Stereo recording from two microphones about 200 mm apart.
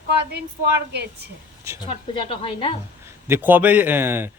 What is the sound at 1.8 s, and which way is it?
Speech, 25° left (ahead or behind).